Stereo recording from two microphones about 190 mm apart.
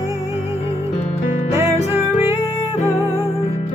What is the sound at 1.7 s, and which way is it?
Music, 35° left (ahead or behind).